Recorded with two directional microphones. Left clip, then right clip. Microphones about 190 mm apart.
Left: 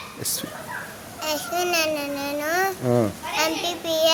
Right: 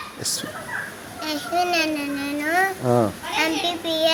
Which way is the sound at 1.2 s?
30° left (ahead or behind).